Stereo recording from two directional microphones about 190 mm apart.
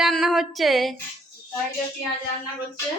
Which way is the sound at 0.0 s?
Centre (ahead or behind).